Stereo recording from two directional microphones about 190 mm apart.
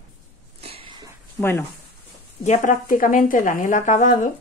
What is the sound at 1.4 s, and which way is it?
Speech, 10° left (ahead or behind).